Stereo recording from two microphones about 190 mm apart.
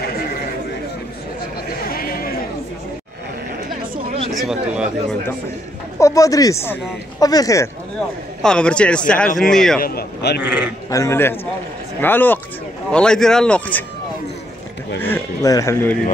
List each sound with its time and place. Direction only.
1.9 s chatter: 50° left (ahead or behind)
4.3 s a sound: centre (ahead or behind)
5.9 s speech: 15° left (ahead or behind)
8.4 s a man's voice: 5° left (ahead or behind)
9.8 s a man's voice: 55° left (ahead or behind)
10.4 s speech: 10° right (ahead or behind)
10.9 s a man's voice: 15° left (ahead or behind)
15.0 s a sound: 10° left (ahead or behind)